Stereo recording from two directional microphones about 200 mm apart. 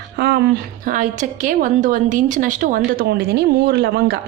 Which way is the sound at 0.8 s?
40° right (ahead or behind).